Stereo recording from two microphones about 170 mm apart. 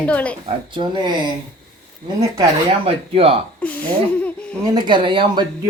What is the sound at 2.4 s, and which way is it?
Speech, 35° right (ahead or behind).